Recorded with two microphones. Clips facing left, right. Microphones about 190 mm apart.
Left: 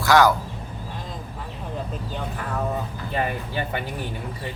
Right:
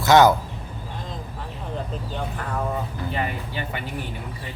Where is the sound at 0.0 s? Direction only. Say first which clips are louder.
Right 2 dB; 20° right (ahead or behind).